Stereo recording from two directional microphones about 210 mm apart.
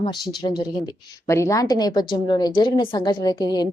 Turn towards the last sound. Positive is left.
turn(degrees=20)  # may be behind; listen again after turning